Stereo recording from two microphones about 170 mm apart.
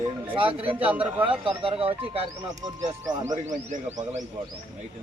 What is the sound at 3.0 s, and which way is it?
Speech, 25° right (ahead or behind).